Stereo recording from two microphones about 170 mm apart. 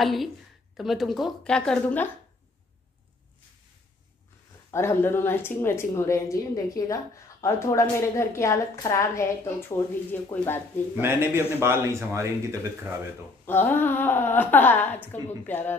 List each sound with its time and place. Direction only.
0.0 s a woman's voice: centre (ahead or behind)
4.6 s a woman's voice: 15° left (ahead or behind)
11.0 s speech: 15° right (ahead or behind)
13.5 s a woman's voice: 10° left (ahead or behind)